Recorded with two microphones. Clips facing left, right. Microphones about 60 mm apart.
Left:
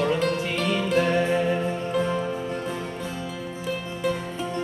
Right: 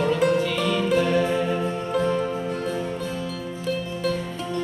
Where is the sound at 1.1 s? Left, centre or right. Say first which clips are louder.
Right 1 dB; centre.